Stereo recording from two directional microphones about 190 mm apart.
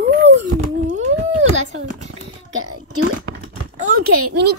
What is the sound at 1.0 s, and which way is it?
Speech, 90° right.